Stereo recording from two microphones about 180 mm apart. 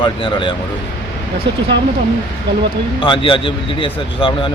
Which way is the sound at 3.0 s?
30° left (ahead or behind).